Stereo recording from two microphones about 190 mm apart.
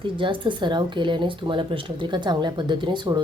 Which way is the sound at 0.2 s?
25° right (ahead or behind).